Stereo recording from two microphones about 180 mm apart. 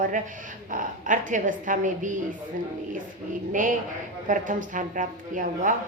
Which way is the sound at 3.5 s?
45° right (ahead or behind).